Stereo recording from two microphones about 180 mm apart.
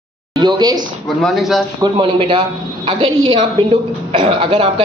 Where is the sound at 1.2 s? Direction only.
Centre (ahead or behind).